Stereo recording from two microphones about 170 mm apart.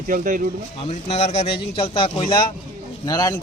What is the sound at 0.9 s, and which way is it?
A man's voice, 40° left (ahead or behind).